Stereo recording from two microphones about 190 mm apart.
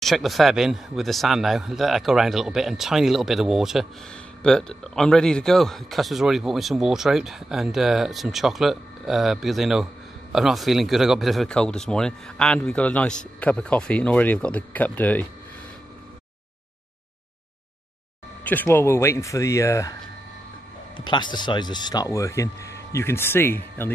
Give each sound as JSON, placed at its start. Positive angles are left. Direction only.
{"t": 0.0, "sound": "a man's voice", "side_deg": 0}
{"t": 18.4, "sound": "speech", "side_deg": 10}